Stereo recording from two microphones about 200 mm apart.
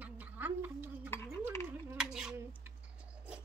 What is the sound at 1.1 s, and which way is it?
Cutlery, 15° left (ahead or behind).